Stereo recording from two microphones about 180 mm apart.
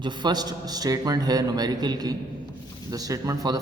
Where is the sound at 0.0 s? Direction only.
25° right (ahead or behind).